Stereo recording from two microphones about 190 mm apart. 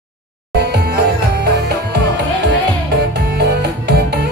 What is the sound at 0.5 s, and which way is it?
Music, 60° right (ahead or behind).